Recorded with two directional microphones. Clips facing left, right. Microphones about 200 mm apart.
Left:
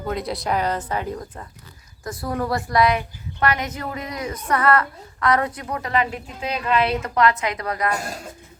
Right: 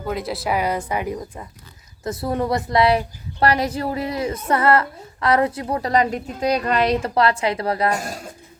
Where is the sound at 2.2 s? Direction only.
25° right (ahead or behind).